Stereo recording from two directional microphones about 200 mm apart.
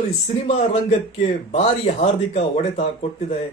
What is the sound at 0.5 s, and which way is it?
A man's voice, 35° left (ahead or behind).